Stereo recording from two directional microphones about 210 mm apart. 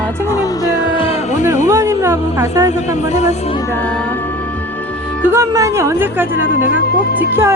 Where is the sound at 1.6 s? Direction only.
15° right (ahead or behind).